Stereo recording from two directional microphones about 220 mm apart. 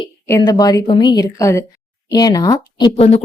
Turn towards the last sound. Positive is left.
turn(degrees=25)  # may be behind; listen again after turning